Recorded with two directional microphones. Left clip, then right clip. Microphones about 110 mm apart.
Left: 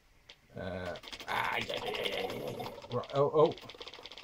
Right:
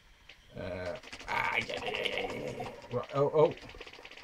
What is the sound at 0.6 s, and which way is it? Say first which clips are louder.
Typing: right 1 dB; 55° left (ahead or behind).